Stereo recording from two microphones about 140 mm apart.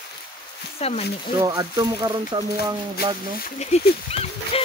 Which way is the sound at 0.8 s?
50° left (ahead or behind).